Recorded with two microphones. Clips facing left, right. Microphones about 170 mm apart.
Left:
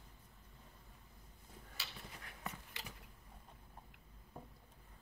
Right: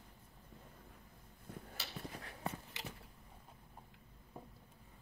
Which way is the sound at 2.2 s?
30° right (ahead or behind).